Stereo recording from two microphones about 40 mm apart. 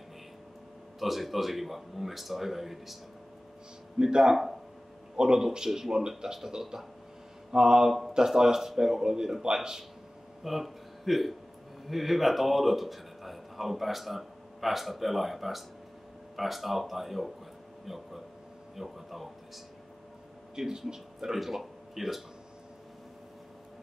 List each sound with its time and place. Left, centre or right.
0.9 s speech: centre
4.0 s speech: centre
10.4 s a sound: centre
11.9 s a man's voice: centre
20.5 s speech: centre